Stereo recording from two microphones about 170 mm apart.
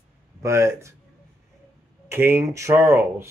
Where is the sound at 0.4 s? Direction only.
15° right (ahead or behind).